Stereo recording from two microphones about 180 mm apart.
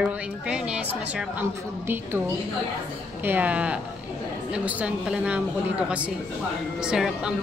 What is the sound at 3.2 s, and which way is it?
A woman's voice, 10° right (ahead or behind).